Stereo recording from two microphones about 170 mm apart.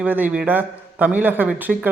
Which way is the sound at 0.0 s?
10° right (ahead or behind).